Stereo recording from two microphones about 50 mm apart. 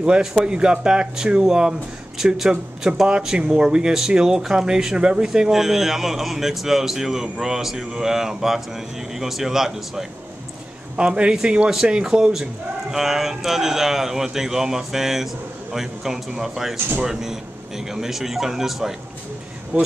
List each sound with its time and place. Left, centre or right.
0.0 s speech: centre
11.0 s a man's voice: right
19.7 s speech: right